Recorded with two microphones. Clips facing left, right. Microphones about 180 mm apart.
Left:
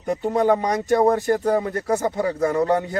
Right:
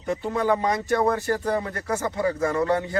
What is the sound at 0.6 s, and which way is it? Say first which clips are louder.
Speech: left 4 dB; 15° left (ahead or behind).